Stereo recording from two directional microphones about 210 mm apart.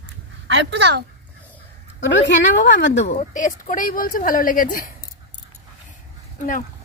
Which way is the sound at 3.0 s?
35° left (ahead or behind).